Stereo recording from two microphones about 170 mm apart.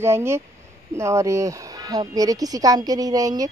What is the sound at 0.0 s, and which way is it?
Speech, 15° right (ahead or behind).